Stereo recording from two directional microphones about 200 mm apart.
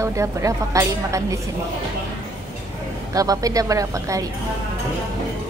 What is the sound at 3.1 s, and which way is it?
A woman's voice, 15° right (ahead or behind).